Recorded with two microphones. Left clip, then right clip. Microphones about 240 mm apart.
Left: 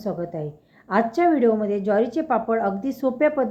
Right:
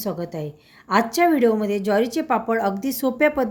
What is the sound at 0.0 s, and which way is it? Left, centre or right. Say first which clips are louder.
A woman's voice: even; right.